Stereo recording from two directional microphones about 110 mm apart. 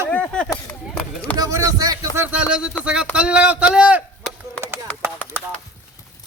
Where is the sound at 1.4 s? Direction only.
30° right (ahead or behind).